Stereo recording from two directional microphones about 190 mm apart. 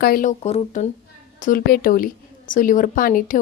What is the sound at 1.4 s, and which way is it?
A woman's voice, 45° left (ahead or behind).